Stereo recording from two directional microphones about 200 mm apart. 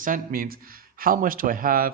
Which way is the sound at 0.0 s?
45° right (ahead or behind).